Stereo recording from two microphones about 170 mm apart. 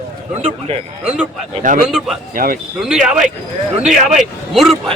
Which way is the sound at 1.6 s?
50° right (ahead or behind).